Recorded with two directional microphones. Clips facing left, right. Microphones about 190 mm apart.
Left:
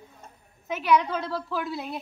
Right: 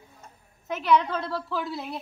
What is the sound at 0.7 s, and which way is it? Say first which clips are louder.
A woman's voice: even; 5° left (ahead or behind).